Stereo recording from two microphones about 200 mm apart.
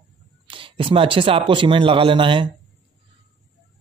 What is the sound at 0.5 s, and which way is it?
Speech, 25° right (ahead or behind).